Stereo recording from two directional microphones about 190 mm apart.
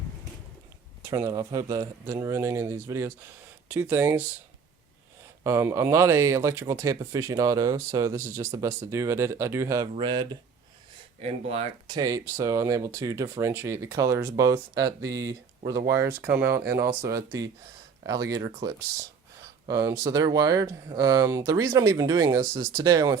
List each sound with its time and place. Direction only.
1.0 s speech: 15° right (ahead or behind)
5.4 s speech: 15° right (ahead or behind)
11.2 s speech: 35° right (ahead or behind)
11.9 s speech: 20° right (ahead or behind)